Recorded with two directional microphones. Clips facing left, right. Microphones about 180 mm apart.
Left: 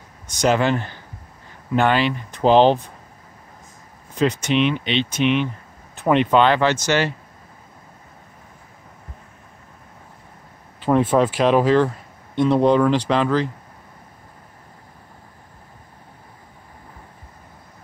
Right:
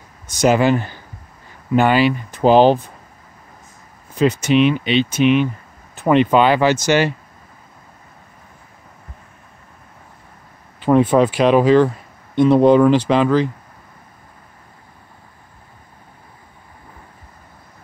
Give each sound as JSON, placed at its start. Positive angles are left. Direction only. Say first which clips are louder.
{"t": 0.3, "sound": "speech", "louder": "right 4 dB", "side_deg": -5}
{"t": 4.1, "sound": "speech", "louder": "right 4 dB", "side_deg": -5}
{"t": 10.9, "sound": "speech", "louder": "right 4 dB", "side_deg": 0}